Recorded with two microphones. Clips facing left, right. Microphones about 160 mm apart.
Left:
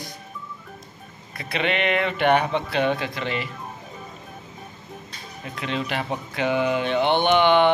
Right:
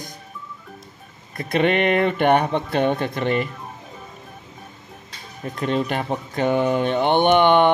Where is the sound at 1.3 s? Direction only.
50° right (ahead or behind).